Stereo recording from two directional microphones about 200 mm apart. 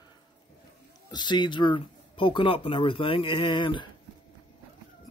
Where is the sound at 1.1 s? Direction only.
20° left (ahead or behind).